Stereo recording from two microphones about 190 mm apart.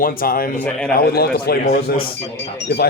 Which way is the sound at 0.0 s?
50° left (ahead or behind).